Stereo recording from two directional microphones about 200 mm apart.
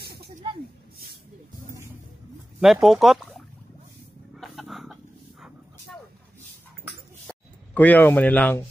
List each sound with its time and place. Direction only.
0.0 s snake: 50° right (ahead or behind)
2.6 s speech: centre (ahead or behind)
4.4 s chicken: centre (ahead or behind)
7.2 s speech: 10° left (ahead or behind)